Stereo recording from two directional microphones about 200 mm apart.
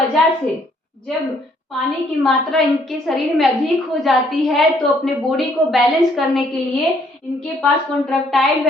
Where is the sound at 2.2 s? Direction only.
Centre (ahead or behind).